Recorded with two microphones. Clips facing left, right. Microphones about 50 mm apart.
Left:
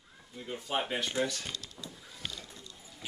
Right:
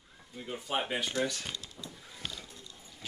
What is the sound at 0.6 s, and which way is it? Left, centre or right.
Speech, centre.